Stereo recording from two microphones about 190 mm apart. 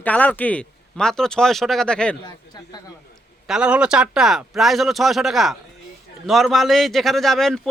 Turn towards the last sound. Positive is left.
turn(degrees=0)  # may be behind; listen again after turning